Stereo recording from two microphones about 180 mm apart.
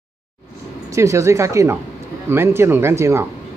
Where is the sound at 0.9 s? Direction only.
15° right (ahead or behind).